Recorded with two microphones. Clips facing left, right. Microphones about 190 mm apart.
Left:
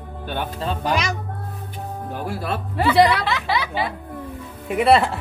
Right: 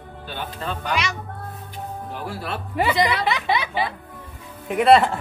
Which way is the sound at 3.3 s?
20° right (ahead or behind).